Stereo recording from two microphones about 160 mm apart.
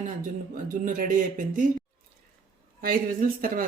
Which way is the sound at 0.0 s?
55° right (ahead or behind).